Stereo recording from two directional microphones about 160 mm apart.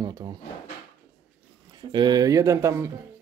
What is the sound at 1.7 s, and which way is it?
Speech, 25° right (ahead or behind).